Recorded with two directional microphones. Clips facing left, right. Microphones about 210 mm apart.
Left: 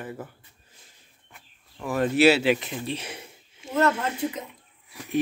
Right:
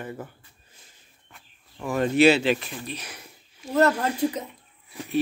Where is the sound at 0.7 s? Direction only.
Centre (ahead or behind).